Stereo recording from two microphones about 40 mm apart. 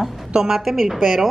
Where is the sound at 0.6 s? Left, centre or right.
Centre.